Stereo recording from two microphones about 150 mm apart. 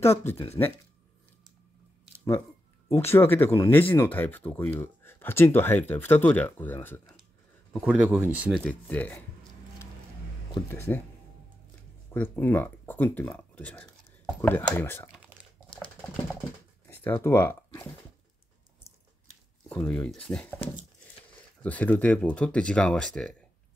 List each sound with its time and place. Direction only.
0.0 s speech: 15° left (ahead or behind)
2.9 s speech: 15° left (ahead or behind)
7.8 s speech: 10° right (ahead or behind)
8.5 s speech: 5° left (ahead or behind)
10.7 s speech: 15° left (ahead or behind)
12.1 s speech: 15° left (ahead or behind)
16.9 s speech: 15° left (ahead or behind)
19.7 s speech: 10° left (ahead or behind)
21.6 s speech: 10° left (ahead or behind)